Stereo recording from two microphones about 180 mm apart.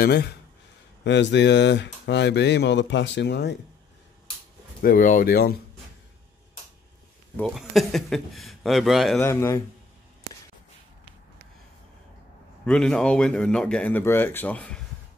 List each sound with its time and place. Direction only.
0.0 s speech: 65° left (ahead or behind)
1.0 s speech: 75° left (ahead or behind)
4.8 s speech: 50° left (ahead or behind)
7.3 s speech: centre (ahead or behind)
9.2 s speech: 15° left (ahead or behind)
12.6 s speech: 5° left (ahead or behind)